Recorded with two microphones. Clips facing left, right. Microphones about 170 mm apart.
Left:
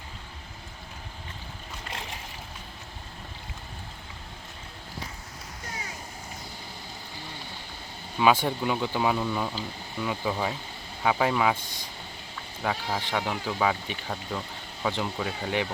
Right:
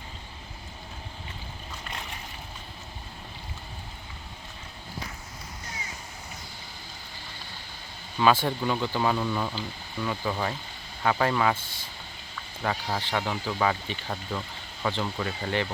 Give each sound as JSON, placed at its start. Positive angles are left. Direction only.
{"t": 8.2, "sound": "speech", "side_deg": 15}
{"t": 11.5, "sound": "speech", "side_deg": 15}
{"t": 12.6, "sound": "speech", "side_deg": 5}